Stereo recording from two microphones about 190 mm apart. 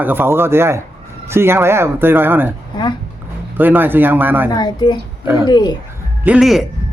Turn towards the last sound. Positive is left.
turn(degrees=0)  # may be behind; listen again after turning